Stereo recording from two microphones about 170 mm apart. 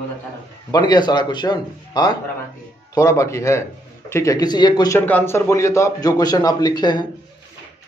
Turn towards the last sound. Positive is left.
turn(degrees=25)  # may be behind; listen again after turning